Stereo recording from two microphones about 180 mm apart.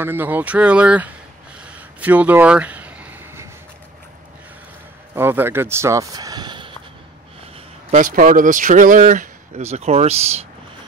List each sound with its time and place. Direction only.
0.0 s speech: 10° right (ahead or behind)
1.6 s a sound: 10° right (ahead or behind)
5.1 s speech: 10° right (ahead or behind)
7.9 s speech: 50° right (ahead or behind)